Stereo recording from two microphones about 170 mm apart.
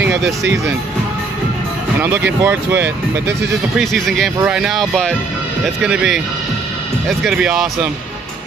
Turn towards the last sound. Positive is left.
turn(degrees=-5)  # may be behind; listen again after turning